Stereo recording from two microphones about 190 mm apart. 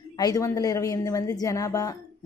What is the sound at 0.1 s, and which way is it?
A woman's voice, 20° left (ahead or behind).